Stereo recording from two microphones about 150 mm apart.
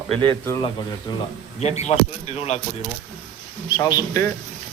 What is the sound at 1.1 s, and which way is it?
Speech, 30° left (ahead or behind).